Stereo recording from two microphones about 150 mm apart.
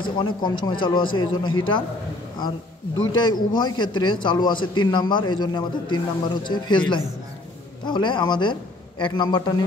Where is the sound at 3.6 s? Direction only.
30° left (ahead or behind).